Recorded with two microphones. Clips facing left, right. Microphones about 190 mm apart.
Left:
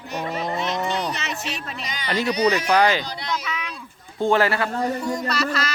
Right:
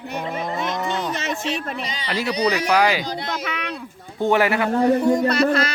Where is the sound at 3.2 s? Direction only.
60° right (ahead or behind).